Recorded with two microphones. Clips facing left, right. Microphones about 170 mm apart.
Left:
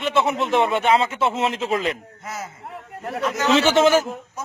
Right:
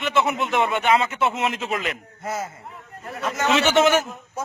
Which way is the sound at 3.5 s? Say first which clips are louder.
Left 2 dB; 30° left (ahead or behind).